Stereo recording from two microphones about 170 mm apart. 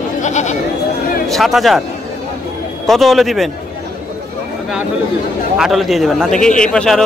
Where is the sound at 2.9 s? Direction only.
Centre (ahead or behind).